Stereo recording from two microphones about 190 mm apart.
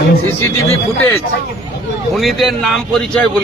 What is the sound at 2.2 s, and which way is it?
A man's voice, centre (ahead or behind).